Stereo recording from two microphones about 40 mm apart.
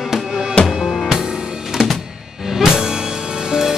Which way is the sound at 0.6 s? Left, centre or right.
Left.